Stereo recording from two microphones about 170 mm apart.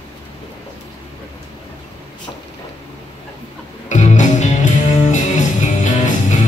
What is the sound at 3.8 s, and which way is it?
Music, 45° left (ahead or behind).